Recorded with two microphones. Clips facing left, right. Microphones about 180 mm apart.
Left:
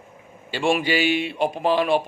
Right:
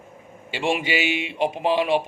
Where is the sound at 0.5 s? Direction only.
20° right (ahead or behind).